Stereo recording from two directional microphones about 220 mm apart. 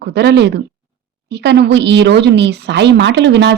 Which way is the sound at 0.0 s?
50° right (ahead or behind).